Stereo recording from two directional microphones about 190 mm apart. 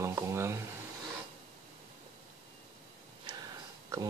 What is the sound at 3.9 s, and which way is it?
Speech, 15° right (ahead or behind).